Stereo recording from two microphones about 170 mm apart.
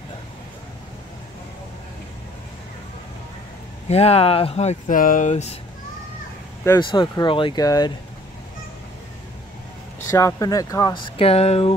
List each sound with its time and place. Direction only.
3.9 s speech: 35° left (ahead or behind)
6.8 s speech: 30° left (ahead or behind)
10.0 s speech: 15° left (ahead or behind); by 11.7 s 35° left (ahead or behind)